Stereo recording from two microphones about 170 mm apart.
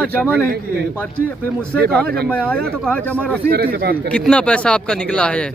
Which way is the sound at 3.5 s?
70° right (ahead or behind).